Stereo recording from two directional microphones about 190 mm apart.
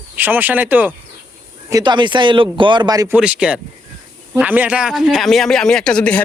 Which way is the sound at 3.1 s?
5° right (ahead or behind).